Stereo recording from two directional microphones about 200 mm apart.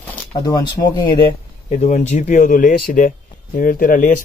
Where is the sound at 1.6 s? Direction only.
35° left (ahead or behind).